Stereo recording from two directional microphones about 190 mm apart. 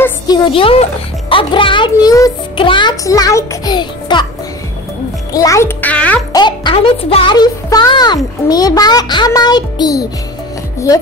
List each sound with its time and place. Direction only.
0.3 s a child's voice: 30° left (ahead or behind)
5.3 s a child's voice: 15° left (ahead or behind)
6.3 s a child's voice: 25° left (ahead or behind)